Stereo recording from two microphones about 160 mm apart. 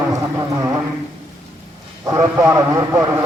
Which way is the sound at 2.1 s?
20° right (ahead or behind).